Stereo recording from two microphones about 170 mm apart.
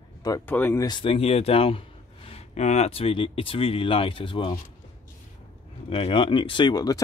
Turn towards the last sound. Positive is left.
turn(degrees=20)  # may be behind; listen again after turning